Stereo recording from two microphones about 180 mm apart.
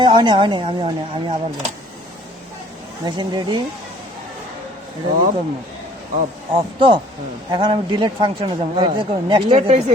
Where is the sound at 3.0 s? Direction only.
25° right (ahead or behind).